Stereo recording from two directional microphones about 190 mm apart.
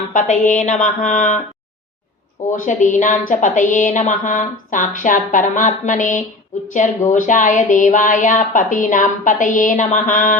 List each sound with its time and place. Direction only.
0.1 s a woman's voice: 40° left (ahead or behind)
2.5 s a woman's voice: 40° left (ahead or behind)